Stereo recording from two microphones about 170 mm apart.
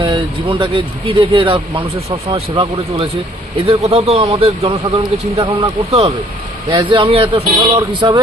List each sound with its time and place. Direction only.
0.0 s speech: 30° right (ahead or behind)